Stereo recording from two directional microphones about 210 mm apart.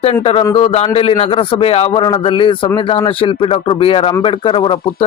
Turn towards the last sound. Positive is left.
turn(degrees=25)  # may be behind; listen again after turning